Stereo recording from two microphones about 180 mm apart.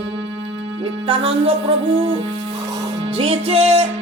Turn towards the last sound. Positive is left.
turn(degrees=-35)  # may be behind; listen again after turning